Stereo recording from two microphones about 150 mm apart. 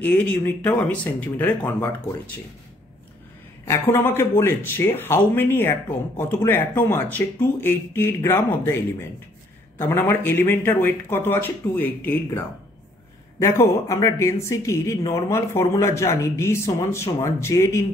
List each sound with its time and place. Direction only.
0.0 s speech: 10° left (ahead or behind)
3.6 s speech: 15° left (ahead or behind)
9.8 s a woman's voice: 15° left (ahead or behind)